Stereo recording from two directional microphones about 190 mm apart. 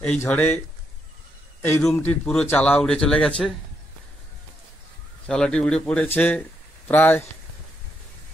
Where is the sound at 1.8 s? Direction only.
10° left (ahead or behind).